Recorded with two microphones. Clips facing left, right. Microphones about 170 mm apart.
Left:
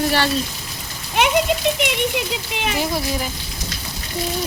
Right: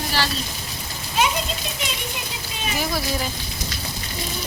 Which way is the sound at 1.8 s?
75° left (ahead or behind).